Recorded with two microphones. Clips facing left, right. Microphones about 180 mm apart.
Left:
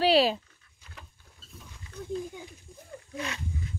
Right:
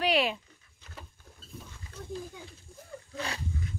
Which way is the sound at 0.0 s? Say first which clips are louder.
Left 5 dB; 30° left (ahead or behind).